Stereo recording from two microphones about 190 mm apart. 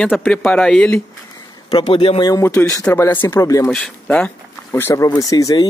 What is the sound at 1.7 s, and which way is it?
A man's voice, 25° left (ahead or behind).